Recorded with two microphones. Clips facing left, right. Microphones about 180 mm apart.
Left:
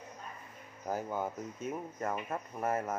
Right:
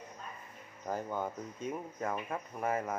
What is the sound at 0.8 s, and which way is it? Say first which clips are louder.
Speech: left 1 dB; 5° left (ahead or behind).